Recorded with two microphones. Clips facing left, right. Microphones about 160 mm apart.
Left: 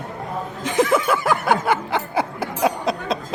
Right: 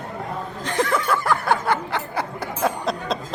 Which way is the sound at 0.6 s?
5° left (ahead or behind).